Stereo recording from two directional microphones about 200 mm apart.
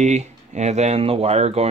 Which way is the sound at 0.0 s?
35° right (ahead or behind).